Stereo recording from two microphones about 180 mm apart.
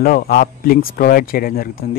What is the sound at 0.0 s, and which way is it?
Speech, 55° left (ahead or behind).